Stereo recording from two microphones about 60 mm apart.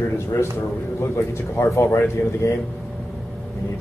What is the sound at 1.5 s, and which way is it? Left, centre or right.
Speech, left.